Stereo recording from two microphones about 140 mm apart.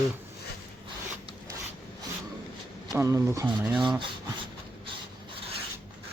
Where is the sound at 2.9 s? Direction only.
25° right (ahead or behind).